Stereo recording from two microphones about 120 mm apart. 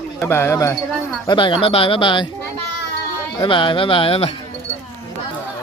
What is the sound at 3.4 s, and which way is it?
Speech, 45° left (ahead or behind).